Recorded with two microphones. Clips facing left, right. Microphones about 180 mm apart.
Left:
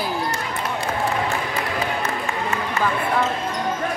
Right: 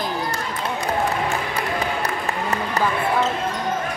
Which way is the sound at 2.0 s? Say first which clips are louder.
Even; 35° right (ahead or behind).